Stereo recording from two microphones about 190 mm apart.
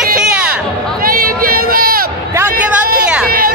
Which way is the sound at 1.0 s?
50° right (ahead or behind).